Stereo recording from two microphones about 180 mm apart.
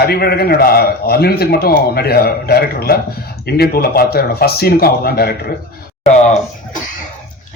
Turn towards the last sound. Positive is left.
turn(degrees=40)  # may be behind; listen again after turning